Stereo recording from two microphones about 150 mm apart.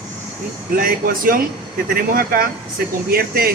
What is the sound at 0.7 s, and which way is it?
Speech, 75° right (ahead or behind).